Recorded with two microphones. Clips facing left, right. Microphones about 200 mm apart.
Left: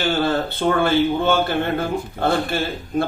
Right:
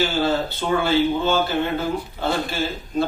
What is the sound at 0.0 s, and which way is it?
A man's voice, 55° left (ahead or behind).